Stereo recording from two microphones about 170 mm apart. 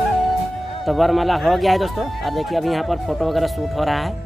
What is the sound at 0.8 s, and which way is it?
Speech, centre (ahead or behind).